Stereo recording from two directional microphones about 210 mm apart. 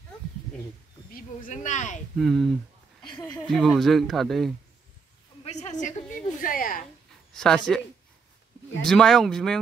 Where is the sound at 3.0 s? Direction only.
20° left (ahead or behind).